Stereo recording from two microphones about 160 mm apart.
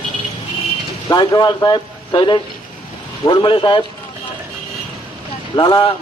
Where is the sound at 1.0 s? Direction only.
25° left (ahead or behind).